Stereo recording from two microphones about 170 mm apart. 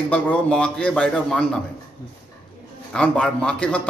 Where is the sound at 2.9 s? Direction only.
5° left (ahead or behind).